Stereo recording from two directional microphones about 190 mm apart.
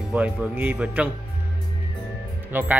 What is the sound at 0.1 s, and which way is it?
A man's voice, 10° right (ahead or behind).